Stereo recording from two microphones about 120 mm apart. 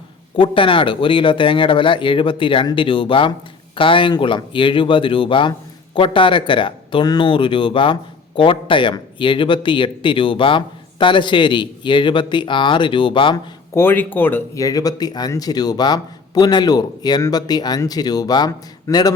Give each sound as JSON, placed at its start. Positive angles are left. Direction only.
{"t": 0.3, "sound": "speech", "side_deg": 45}
{"t": 13.7, "sound": "speech", "side_deg": 15}
{"t": 14.6, "sound": "a man's voice", "side_deg": 30}